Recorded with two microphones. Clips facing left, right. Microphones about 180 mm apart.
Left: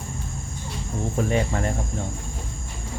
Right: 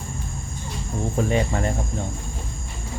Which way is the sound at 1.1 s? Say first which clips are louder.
Right 1 dB; 20° right (ahead or behind).